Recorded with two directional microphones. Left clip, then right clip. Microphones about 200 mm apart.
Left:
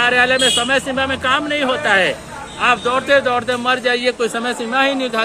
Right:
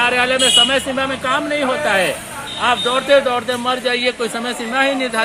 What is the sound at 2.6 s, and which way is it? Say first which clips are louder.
Speech: left 1 dB; 30° left (ahead or behind).